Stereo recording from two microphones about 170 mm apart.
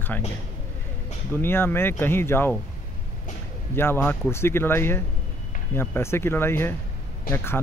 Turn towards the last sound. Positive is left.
turn(degrees=15)  # may be behind; listen again after turning